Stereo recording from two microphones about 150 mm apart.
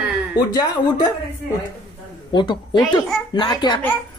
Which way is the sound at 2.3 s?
30° left (ahead or behind).